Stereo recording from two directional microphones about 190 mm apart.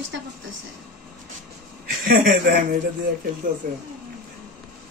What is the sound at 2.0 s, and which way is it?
Speech, 50° right (ahead or behind).